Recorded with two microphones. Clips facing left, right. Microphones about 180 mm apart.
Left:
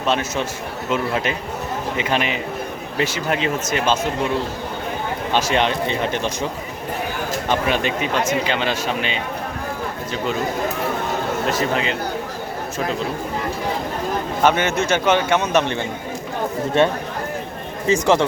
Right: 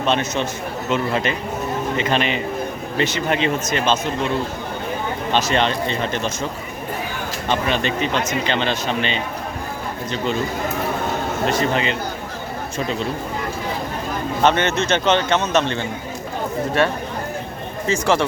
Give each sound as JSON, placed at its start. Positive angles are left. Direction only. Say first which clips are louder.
{"t": 0.1, "sound": "a man's voice", "louder": "even", "side_deg": 5}
{"t": 5.3, "sound": "a man's voice", "louder": "even", "side_deg": 10}
{"t": 7.5, "sound": "a man's voice", "louder": "even", "side_deg": 10}
{"t": 11.4, "sound": "speech", "louder": "right 3 dB", "side_deg": 5}
{"t": 14.4, "sound": "a man's voice", "louder": "even", "side_deg": 10}